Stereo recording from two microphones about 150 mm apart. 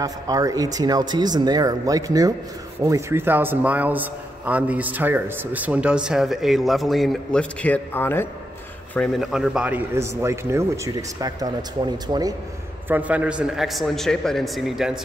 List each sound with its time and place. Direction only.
0.0 s speech: 25° right (ahead or behind); by 8.3 s 15° left (ahead or behind)
8.9 s speech: centre (ahead or behind); by 12.4 s 25° right (ahead or behind)
12.8 s a man's voice: 10° right (ahead or behind)